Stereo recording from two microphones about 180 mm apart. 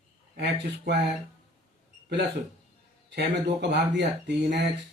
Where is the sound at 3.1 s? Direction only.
70° right (ahead or behind).